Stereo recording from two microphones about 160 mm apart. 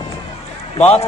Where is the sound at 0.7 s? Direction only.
40° left (ahead or behind).